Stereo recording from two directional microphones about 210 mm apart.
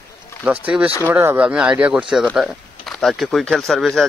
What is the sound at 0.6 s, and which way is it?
Speech, 5° right (ahead or behind).